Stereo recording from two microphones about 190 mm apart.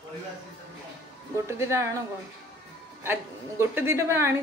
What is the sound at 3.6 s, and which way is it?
Speech, 15° right (ahead or behind).